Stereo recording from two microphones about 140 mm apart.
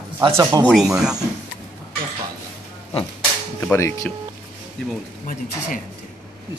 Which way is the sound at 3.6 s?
20° left (ahead or behind).